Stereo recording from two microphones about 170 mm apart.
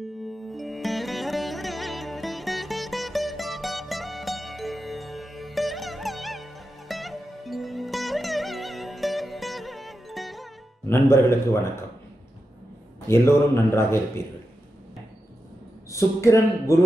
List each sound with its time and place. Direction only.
0.5 s sitar: centre (ahead or behind)
10.9 s a man's voice: 15° left (ahead or behind)
13.1 s a man's voice: 15° left (ahead or behind)
15.9 s a man's voice: 15° left (ahead or behind)